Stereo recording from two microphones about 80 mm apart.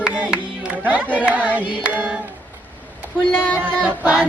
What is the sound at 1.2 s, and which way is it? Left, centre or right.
Hands, centre.